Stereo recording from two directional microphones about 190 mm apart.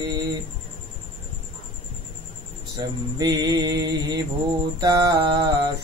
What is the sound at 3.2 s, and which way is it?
Music, 20° right (ahead or behind).